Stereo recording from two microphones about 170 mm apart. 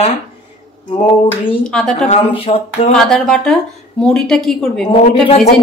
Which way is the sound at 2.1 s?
35° left (ahead or behind).